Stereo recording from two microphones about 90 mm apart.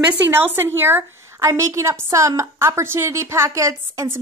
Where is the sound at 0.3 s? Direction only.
25° right (ahead or behind).